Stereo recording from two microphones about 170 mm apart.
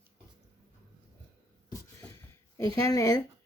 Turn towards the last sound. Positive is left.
turn(degrees=20)  # may be behind; listen again after turning